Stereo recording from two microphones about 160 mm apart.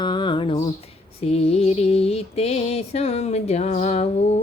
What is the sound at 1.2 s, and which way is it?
Mantra, 40° left (ahead or behind).